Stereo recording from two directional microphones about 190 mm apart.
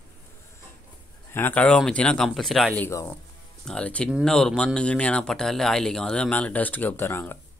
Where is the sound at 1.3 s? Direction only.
10° left (ahead or behind).